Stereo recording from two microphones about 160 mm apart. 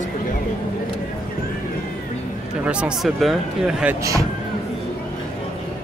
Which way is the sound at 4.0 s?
20° right (ahead or behind).